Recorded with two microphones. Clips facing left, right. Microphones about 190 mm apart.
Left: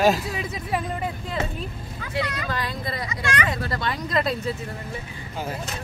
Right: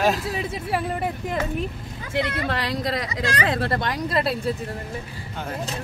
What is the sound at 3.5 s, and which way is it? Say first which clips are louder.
Speech: right 4 dB; 60° right (ahead or behind).